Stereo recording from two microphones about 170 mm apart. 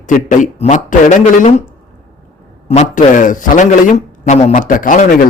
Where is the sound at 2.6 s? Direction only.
45° left (ahead or behind).